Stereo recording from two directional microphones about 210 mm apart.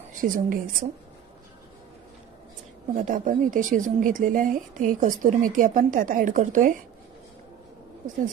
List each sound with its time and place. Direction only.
0.1 s speech: 40° right (ahead or behind)
2.9 s speech: 40° right (ahead or behind)